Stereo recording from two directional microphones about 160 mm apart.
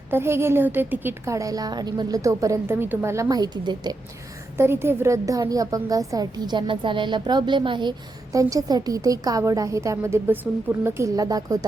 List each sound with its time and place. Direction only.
0.1 s a woman's voice: 15° right (ahead or behind)
4.5 s a woman's voice: 15° right (ahead or behind)